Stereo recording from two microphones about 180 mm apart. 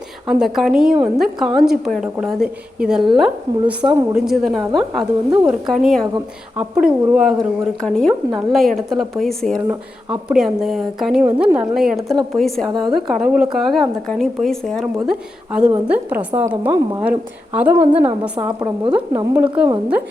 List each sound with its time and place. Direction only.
0.3 s a woman's voice: centre (ahead or behind)
18.1 s a woman's voice: 25° right (ahead or behind)